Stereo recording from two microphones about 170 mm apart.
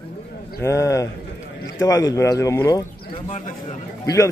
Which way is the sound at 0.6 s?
15° left (ahead or behind).